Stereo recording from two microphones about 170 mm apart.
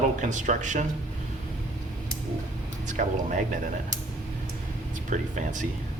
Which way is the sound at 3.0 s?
55° right (ahead or behind).